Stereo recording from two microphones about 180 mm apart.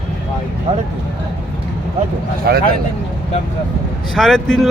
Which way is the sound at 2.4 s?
60° right (ahead or behind).